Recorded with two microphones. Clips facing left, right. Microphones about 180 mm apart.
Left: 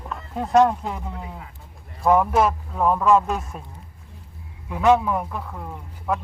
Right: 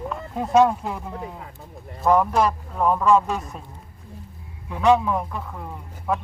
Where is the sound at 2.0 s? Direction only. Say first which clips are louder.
Left 1 dB; 5° left (ahead or behind).